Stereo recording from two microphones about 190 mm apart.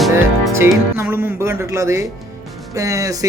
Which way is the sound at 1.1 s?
10° right (ahead or behind).